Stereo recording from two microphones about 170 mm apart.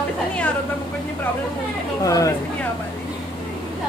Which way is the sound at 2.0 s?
20° left (ahead or behind).